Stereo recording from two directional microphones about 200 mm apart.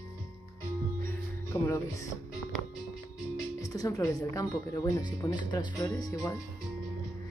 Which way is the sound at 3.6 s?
20° left (ahead or behind).